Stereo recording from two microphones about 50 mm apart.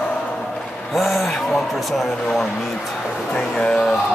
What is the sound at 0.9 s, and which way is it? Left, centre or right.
Speech, centre.